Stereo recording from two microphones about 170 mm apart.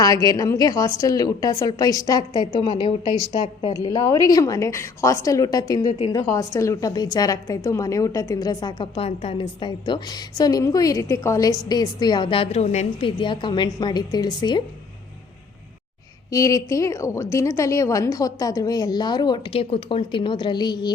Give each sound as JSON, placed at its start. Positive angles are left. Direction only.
{"t": 0.0, "sound": "a woman's voice", "side_deg": 20}
{"t": 16.3, "sound": "a woman's voice", "side_deg": 20}